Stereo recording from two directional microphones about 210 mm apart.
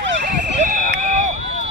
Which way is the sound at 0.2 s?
40° right (ahead or behind).